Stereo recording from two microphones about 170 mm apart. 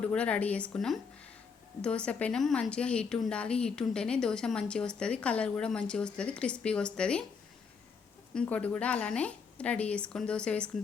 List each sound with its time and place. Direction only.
0.0 s a woman's voice: 5° left (ahead or behind)
8.4 s a woman's voice: 10° left (ahead or behind)